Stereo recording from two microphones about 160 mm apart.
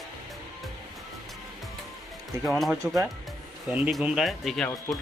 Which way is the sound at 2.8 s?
20° right (ahead or behind).